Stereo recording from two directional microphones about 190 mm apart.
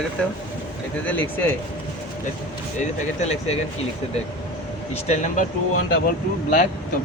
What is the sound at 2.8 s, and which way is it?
Speech, 35° left (ahead or behind).